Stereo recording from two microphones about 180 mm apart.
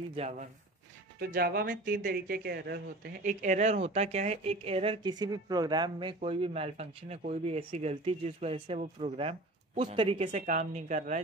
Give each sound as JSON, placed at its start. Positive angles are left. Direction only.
{"t": 0.1, "sound": "speech", "side_deg": -40}
{"t": 1.2, "sound": "speech", "side_deg": -55}
{"t": 3.3, "sound": "speech", "side_deg": -40}